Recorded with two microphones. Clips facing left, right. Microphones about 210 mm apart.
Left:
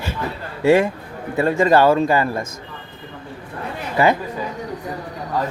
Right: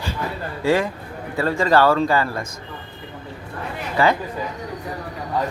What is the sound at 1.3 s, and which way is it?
Speech, 20° left (ahead or behind).